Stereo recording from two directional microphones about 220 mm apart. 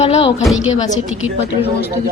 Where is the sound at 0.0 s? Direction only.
25° left (ahead or behind).